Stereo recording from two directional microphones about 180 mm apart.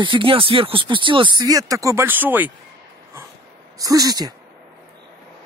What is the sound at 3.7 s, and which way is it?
Speech, 20° right (ahead or behind).